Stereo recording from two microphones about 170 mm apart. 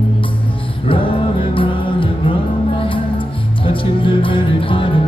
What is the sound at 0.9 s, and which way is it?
Music, 30° left (ahead or behind).